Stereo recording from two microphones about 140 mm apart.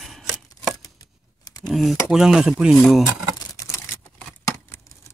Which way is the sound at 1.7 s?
Centre (ahead or behind).